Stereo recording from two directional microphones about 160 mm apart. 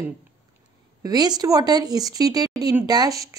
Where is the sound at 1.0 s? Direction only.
25° right (ahead or behind).